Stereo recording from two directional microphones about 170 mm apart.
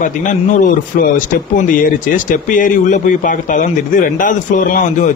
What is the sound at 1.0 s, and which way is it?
Speech, 50° left (ahead or behind).